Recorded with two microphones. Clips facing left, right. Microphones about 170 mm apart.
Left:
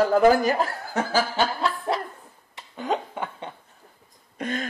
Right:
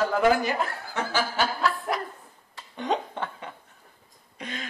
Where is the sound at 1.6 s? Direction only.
25° left (ahead or behind).